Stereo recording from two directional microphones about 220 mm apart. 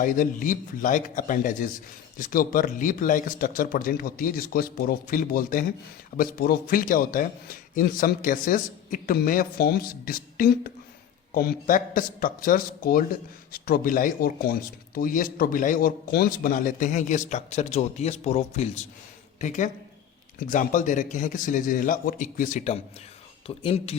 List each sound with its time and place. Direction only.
0.0 s speech: 35° left (ahead or behind)